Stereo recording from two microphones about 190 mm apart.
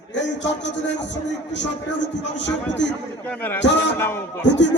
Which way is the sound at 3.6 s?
70° left (ahead or behind).